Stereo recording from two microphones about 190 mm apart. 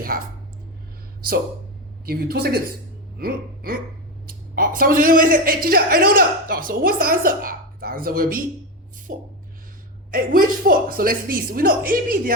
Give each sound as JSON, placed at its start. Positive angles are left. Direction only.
{"t": 0.1, "sound": "a man's voice", "side_deg": -50}
{"t": 2.0, "sound": "a woman's voice", "side_deg": -55}